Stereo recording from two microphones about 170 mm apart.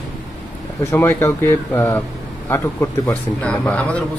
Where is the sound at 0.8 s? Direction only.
15° left (ahead or behind).